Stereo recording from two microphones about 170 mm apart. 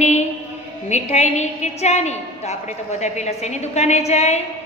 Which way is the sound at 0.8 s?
40° left (ahead or behind).